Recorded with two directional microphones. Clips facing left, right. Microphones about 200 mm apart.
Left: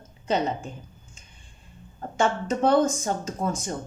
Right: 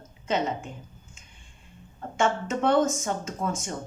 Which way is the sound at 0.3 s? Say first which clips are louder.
Left 2 dB; 35° left (ahead or behind).